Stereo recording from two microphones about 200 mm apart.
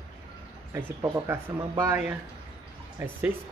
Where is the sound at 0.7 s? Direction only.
10° right (ahead or behind).